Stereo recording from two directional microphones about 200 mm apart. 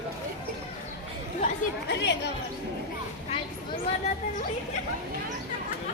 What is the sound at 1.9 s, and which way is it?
Speech, 60° left (ahead or behind).